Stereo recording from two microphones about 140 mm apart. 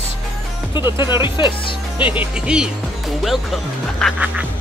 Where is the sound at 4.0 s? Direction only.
5° left (ahead or behind).